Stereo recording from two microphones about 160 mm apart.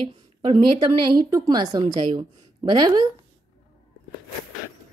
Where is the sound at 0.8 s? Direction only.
25° right (ahead or behind).